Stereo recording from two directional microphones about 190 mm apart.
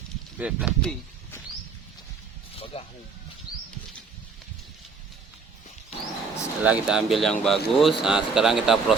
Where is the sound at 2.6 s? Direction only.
30° left (ahead or behind).